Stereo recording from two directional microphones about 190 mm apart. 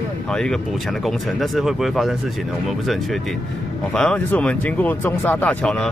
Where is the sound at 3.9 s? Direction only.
5° left (ahead or behind).